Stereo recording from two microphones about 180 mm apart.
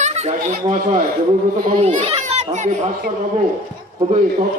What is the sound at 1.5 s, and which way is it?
Speech, 50° right (ahead or behind).